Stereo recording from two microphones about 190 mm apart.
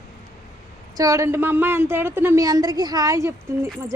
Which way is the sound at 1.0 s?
15° right (ahead or behind).